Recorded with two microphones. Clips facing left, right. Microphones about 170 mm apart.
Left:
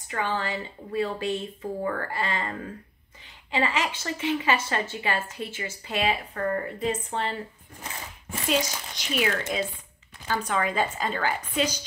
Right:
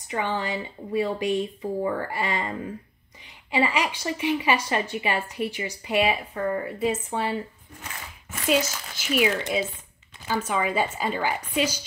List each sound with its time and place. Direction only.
0.1 s speech: 15° right (ahead or behind)
8.5 s speech: 5° right (ahead or behind)